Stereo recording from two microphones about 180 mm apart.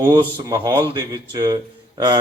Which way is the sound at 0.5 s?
20° right (ahead or behind).